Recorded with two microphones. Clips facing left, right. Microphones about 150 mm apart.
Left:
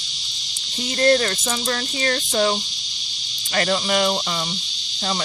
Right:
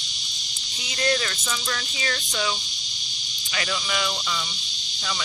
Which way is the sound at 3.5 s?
50° left (ahead or behind).